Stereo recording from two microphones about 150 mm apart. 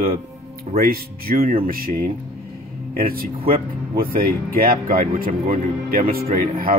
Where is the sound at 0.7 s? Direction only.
75° right (ahead or behind).